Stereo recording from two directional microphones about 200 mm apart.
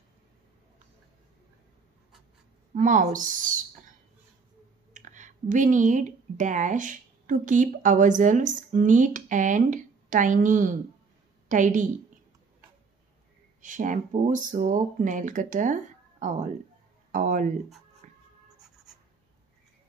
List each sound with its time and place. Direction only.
2.7 s speech: 40° right (ahead or behind)
4.9 s a woman's voice: 40° right (ahead or behind)
13.6 s speech: 40° right (ahead or behind)
18.0 s writing: 40° right (ahead or behind)